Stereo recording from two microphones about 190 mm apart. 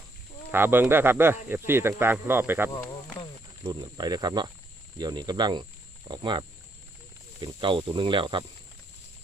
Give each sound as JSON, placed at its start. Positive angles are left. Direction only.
{"t": 0.5, "sound": "speech", "side_deg": -10}
{"t": 2.7, "sound": "speech", "side_deg": 20}
{"t": 3.6, "sound": "speech", "side_deg": -25}
{"t": 7.4, "sound": "speech", "side_deg": -25}